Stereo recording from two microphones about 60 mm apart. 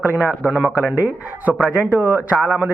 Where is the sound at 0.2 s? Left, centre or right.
Right.